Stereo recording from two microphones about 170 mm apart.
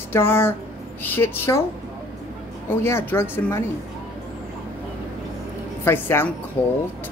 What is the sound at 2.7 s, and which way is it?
Speech, 15° left (ahead or behind).